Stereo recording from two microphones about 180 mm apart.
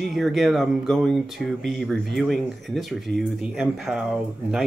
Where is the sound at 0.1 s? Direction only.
Centre (ahead or behind).